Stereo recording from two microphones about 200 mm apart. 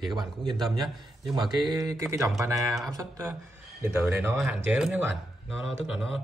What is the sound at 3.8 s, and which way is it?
Speech, 10° right (ahead or behind).